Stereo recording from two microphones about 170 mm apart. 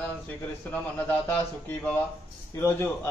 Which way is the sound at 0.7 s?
10° left (ahead or behind).